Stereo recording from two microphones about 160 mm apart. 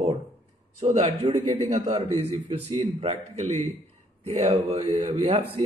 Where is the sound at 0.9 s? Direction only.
40° right (ahead or behind).